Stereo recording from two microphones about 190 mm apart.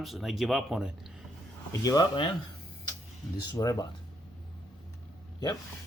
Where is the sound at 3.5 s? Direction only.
20° left (ahead or behind).